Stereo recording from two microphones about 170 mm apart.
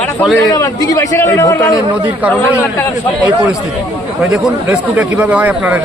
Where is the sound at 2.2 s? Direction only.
10° right (ahead or behind).